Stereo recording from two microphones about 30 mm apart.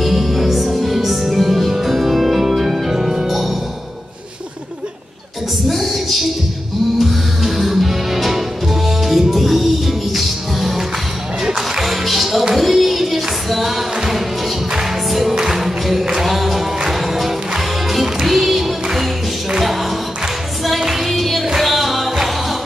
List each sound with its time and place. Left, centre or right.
0.0 s music: centre
5.7 s a sound: centre
7.0 s music: centre
11.4 s music: right
11.8 s music: centre
20.9 s music: centre